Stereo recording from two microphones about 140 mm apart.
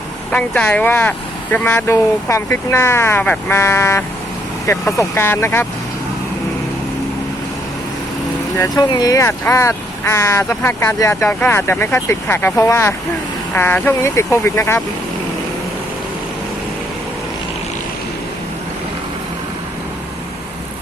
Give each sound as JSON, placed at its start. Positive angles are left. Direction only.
{"t": 0.3, "sound": "speech", "side_deg": 10}
{"t": 8.5, "sound": "speech", "side_deg": 25}